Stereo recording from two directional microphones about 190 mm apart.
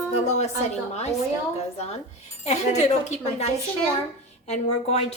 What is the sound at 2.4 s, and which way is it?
A woman's voice, 35° left (ahead or behind).